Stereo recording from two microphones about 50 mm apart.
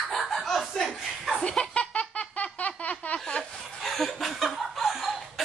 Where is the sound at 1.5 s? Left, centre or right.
Left.